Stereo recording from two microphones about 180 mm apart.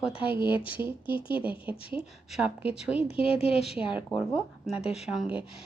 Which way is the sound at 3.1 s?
35° left (ahead or behind).